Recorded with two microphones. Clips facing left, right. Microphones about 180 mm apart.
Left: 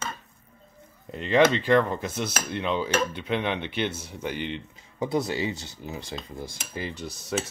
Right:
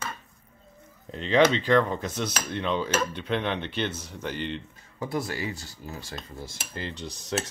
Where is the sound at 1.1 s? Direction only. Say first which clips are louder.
Left 1 dB; 5° left (ahead or behind).